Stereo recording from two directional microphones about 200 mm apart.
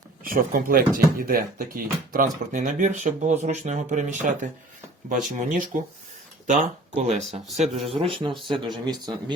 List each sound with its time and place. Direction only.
0.2 s a man's voice: 45° right (ahead or behind); by 9.1 s 20° right (ahead or behind)